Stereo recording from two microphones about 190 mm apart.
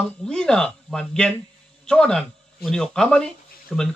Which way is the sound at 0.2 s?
5° left (ahead or behind).